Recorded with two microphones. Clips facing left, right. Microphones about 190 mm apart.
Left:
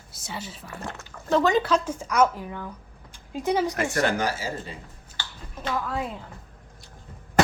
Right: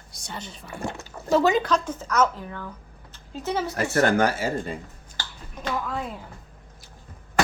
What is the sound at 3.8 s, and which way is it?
Speech, 45° right (ahead or behind).